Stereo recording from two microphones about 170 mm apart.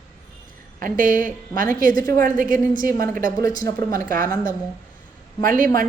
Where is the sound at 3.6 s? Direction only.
15° left (ahead or behind).